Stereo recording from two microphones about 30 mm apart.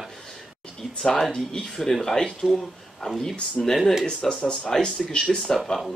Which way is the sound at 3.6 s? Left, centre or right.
Left.